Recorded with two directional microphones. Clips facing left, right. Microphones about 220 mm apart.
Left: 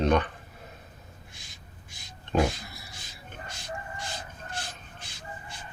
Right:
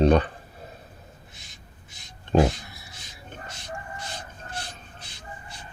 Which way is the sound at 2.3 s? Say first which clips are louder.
Right 5 dB; 30° right (ahead or behind).